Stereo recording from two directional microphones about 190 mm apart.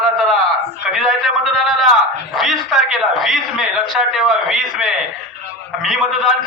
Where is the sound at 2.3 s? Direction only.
Centre (ahead or behind).